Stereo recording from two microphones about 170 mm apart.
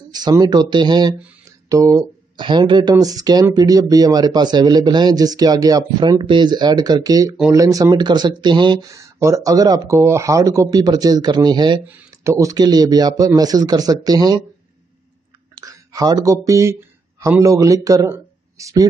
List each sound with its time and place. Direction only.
0.1 s speech: 25° right (ahead or behind)
15.5 s a man's voice: 20° right (ahead or behind)